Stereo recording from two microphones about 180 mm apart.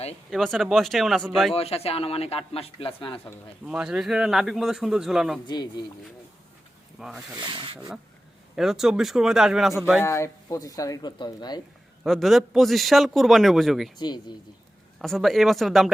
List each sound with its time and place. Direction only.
0.3 s a man's voice: centre (ahead or behind)
1.5 s a man's voice: 35° left (ahead or behind)
3.7 s a man's voice: 5° right (ahead or behind)
5.5 s speech: 25° left (ahead or behind)
7.0 s a man's voice: 5° right (ahead or behind)
7.3 s speech: 25° right (ahead or behind)
8.5 s a man's voice: 5° right (ahead or behind)
10.0 s speech: 15° left (ahead or behind)
12.0 s a man's voice: centre (ahead or behind)
14.0 s speech: 25° left (ahead or behind)
15.0 s a man's voice: centre (ahead or behind)